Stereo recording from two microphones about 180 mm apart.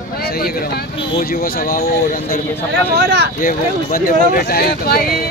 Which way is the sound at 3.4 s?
50° left (ahead or behind).